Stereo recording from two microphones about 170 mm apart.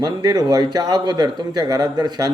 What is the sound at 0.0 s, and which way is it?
A man's voice, 20° right (ahead or behind).